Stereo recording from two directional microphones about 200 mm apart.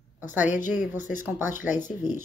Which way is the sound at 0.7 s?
40° left (ahead or behind).